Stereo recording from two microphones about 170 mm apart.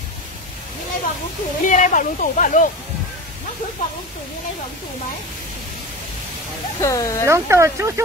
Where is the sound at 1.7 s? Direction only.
50° left (ahead or behind).